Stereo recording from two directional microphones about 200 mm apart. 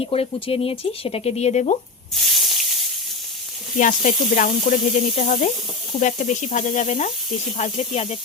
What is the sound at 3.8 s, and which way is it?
Speech, 40° left (ahead or behind).